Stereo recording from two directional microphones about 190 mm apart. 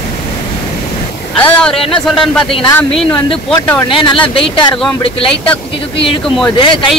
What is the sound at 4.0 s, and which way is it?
Speech, 25° left (ahead or behind).